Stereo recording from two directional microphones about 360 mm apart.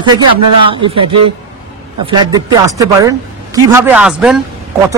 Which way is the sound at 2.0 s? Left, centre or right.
Centre.